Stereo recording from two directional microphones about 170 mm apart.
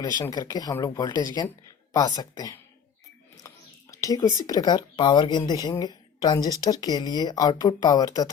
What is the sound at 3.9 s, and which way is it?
Speech, 20° left (ahead or behind).